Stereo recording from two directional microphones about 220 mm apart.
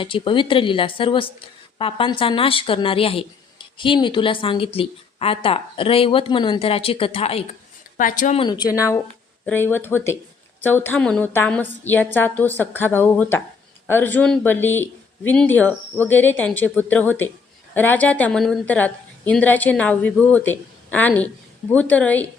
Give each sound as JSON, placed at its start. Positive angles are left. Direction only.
{"t": 0.0, "sound": "a woman's voice", "side_deg": 25}
{"t": 7.9, "sound": "speech", "side_deg": 35}
{"t": 8.4, "sound": "a woman's voice", "side_deg": 20}